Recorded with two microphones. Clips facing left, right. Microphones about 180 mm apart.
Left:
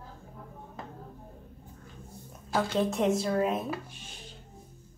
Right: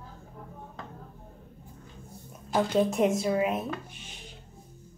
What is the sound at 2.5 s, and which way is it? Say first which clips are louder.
Speech: right 3 dB; 20° right (ahead or behind).